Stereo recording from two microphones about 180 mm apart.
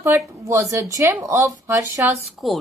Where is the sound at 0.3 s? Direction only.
15° right (ahead or behind).